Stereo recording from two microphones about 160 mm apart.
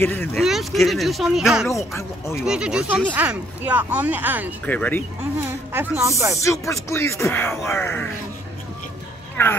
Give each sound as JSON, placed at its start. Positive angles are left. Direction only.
{"t": 0.0, "sound": "speech", "side_deg": 15}
{"t": 0.3, "sound": "speech", "side_deg": 0}
{"t": 2.0, "sound": "speech", "side_deg": 15}
{"t": 2.4, "sound": "speech", "side_deg": -5}
{"t": 4.6, "sound": "speech", "side_deg": 10}
{"t": 5.7, "sound": "speech", "side_deg": -15}
{"t": 6.4, "sound": "speech", "side_deg": 20}
{"t": 9.4, "sound": "speech", "side_deg": 15}